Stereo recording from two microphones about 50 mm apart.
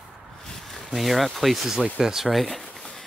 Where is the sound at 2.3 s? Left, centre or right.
Centre.